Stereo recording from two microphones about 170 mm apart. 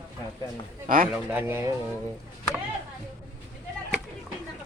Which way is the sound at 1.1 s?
10° right (ahead or behind).